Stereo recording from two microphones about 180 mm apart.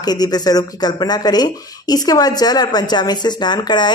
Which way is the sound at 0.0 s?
20° left (ahead or behind).